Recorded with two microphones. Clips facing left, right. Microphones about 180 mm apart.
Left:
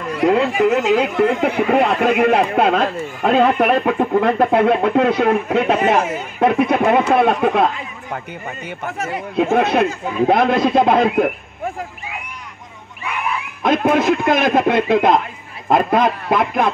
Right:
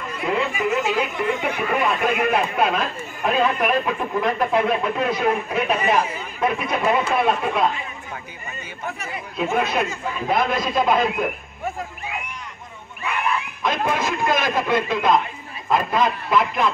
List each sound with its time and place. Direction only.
0.1 s speech: 70° left (ahead or behind)
13.6 s speech: 60° left (ahead or behind)